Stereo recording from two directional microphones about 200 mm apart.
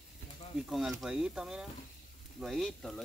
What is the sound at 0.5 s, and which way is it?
Speech, centre (ahead or behind).